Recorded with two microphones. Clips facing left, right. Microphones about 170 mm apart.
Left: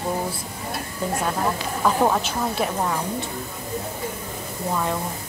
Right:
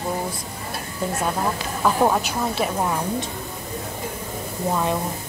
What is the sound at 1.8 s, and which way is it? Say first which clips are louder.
Speech: right 1 dB; 5° right (ahead or behind).